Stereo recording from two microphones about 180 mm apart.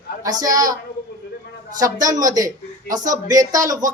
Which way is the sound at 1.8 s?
20° right (ahead or behind).